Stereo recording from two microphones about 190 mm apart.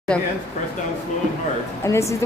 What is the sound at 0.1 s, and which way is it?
Speech, 5° left (ahead or behind).